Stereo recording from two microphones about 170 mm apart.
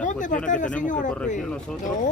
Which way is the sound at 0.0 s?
50° left (ahead or behind).